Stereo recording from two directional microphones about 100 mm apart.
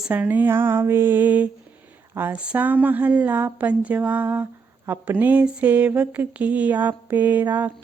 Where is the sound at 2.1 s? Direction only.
20° right (ahead or behind).